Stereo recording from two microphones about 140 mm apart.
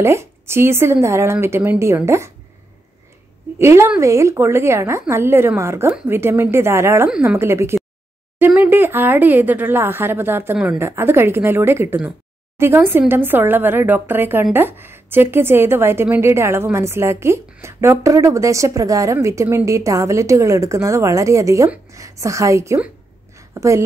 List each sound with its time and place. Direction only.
0.0 s speech: 20° right (ahead or behind)
3.5 s speech: 20° right (ahead or behind)
7.1 s a woman's voice: 5° right (ahead or behind)
7.3 s speech: 20° right (ahead or behind)
23.3 s a sound: 20° right (ahead or behind)